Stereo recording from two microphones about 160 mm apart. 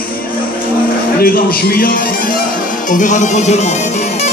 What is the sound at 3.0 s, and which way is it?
Music, 50° left (ahead or behind).